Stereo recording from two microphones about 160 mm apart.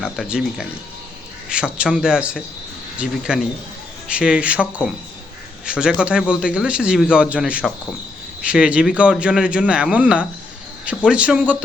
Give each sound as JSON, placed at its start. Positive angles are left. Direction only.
{"t": 0.0, "sound": "a man's voice", "side_deg": -5}